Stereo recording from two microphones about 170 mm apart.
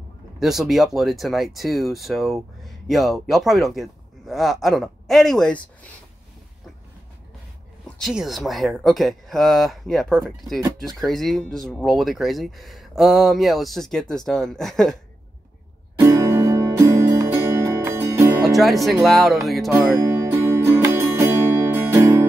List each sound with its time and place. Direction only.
0.4 s speech: centre (ahead or behind)
8.0 s speech: centre (ahead or behind)
16.0 s music: 15° right (ahead or behind)
18.4 s speech: centre (ahead or behind)
19.7 s music: 15° right (ahead or behind)